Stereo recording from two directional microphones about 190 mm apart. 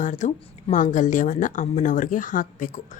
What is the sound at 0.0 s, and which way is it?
A woman's voice, 40° left (ahead or behind).